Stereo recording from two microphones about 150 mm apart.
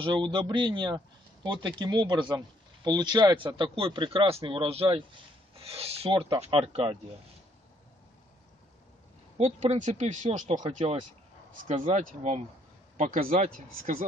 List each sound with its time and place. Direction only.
0.0 s speech: 30° right (ahead or behind)
9.4 s speech: 50° right (ahead or behind)
10.6 s speech: 40° right (ahead or behind)
11.5 s speech: 60° right (ahead or behind)